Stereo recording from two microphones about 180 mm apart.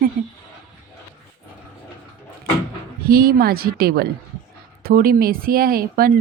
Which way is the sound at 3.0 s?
55° right (ahead or behind).